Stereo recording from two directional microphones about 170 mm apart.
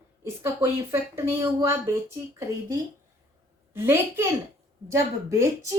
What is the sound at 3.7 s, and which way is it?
Speech, 15° right (ahead or behind).